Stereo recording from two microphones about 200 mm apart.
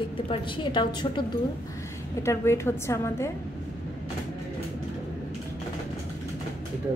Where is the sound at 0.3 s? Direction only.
25° left (ahead or behind).